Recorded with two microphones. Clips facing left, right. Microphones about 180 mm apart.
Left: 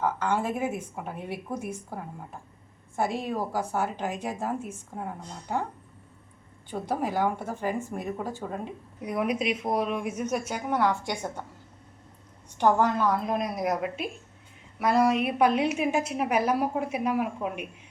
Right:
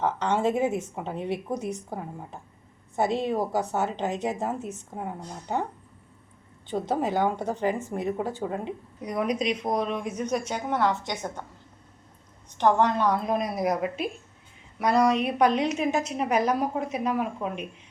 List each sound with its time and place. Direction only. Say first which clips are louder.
0.0 s a woman's voice: right 3 dB; 25° right (ahead or behind)
6.7 s a woman's voice: right 3 dB; 20° right (ahead or behind)
9.0 s a woman's voice: even; 5° left (ahead or behind)
12.5 s a woman's voice: right 1 dB; 5° left (ahead or behind)